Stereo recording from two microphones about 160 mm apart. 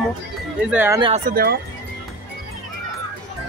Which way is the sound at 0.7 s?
15° right (ahead or behind).